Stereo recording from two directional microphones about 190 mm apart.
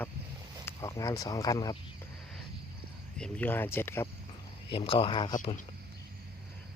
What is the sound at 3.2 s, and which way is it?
Speech, 10° left (ahead or behind).